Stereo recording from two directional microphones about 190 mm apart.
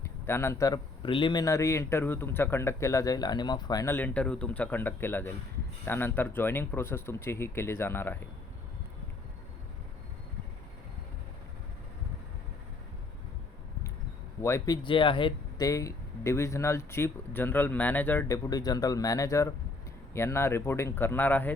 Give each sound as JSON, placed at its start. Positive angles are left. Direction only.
{"t": 0.3, "sound": "a man's voice", "side_deg": 15}
{"t": 14.4, "sound": "a man's voice", "side_deg": 15}
{"t": 14.8, "sound": "a man's voice", "side_deg": 25}